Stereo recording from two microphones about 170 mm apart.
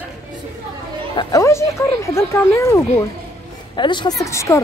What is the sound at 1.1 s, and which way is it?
Speech, 30° left (ahead or behind).